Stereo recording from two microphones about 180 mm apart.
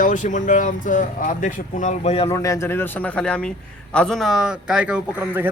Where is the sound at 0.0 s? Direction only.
45° left (ahead or behind).